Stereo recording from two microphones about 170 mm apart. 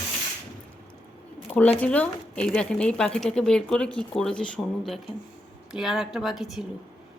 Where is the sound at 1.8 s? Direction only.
10° left (ahead or behind).